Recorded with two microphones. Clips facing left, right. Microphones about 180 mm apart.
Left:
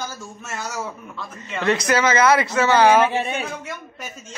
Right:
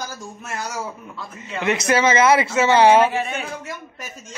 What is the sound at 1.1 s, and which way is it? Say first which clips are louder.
Speech: even; 15° right (ahead or behind).